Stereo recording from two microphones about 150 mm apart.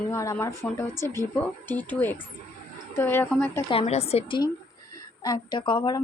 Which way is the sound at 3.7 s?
40° left (ahead or behind).